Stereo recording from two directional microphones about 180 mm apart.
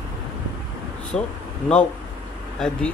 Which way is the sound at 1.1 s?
5° left (ahead or behind).